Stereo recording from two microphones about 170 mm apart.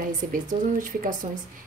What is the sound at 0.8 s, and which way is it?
Speech, 50° right (ahead or behind).